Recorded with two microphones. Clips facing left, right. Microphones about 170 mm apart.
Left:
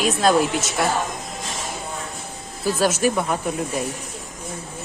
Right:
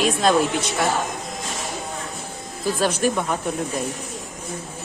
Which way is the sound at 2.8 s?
5° left (ahead or behind).